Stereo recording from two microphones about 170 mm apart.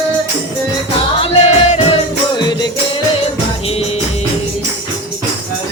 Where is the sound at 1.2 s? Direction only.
40° left (ahead or behind).